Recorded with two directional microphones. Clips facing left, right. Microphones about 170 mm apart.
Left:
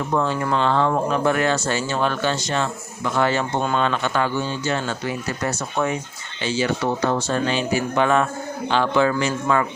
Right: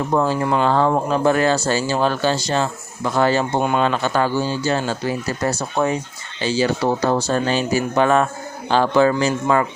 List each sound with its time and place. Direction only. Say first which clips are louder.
0.1 s speech: right 3 dB; 35° right (ahead or behind)